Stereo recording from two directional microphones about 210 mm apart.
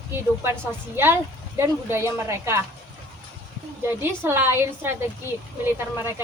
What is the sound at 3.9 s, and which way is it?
A woman's voice, 10° right (ahead or behind).